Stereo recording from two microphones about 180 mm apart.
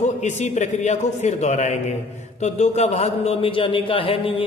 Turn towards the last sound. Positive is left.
turn(degrees=30)  # may be behind; listen again after turning